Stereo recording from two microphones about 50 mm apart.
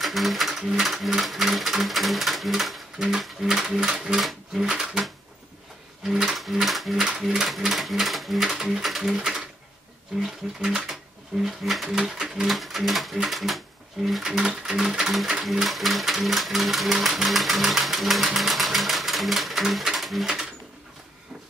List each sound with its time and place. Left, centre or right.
0.0 s speech: centre
4.2 s speech: centre
4.6 s speech: centre
6.0 s speech: centre